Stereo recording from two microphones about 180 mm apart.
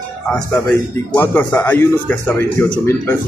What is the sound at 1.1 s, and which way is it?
Speech, 10° left (ahead or behind).